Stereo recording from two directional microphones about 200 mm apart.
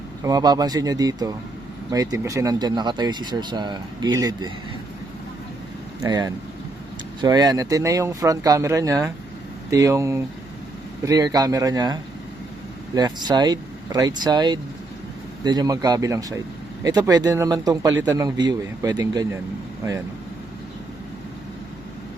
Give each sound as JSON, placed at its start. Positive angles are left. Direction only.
{"t": 0.3, "sound": "speech", "side_deg": -20}
{"t": 6.0, "sound": "speech", "side_deg": -20}